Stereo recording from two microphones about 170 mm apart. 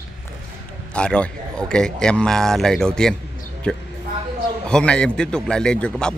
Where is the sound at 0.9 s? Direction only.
5° left (ahead or behind).